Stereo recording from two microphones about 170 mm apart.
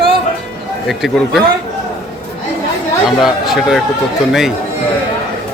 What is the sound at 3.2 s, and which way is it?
Speech, centre (ahead or behind).